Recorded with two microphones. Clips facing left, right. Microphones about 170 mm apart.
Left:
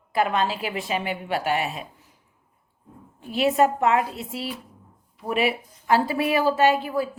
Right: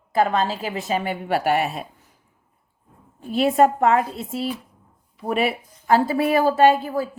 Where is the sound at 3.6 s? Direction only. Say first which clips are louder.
Right 4 dB; 45° right (ahead or behind).